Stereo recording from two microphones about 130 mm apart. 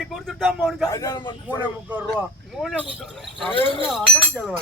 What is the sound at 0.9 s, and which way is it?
Speech, 30° left (ahead or behind).